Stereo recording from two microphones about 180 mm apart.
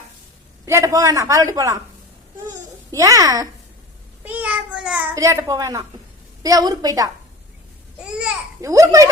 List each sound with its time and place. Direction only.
0.6 s a man's voice: 15° right (ahead or behind)
2.9 s a woman's voice: 20° right (ahead or behind)
4.2 s a sound: 10° right (ahead or behind)
5.1 s a man's voice: 15° right (ahead or behind)
8.0 s babbling: 5° right (ahead or behind)
8.6 s a man's voice: 20° right (ahead or behind)